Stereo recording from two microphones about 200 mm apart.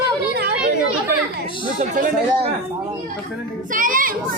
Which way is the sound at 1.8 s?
35° right (ahead or behind).